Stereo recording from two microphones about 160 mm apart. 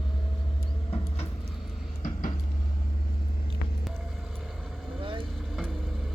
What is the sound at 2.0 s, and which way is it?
Vehicle, 55° left (ahead or behind).